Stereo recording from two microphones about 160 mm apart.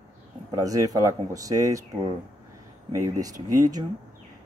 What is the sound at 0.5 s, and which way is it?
Speech, 20° right (ahead or behind).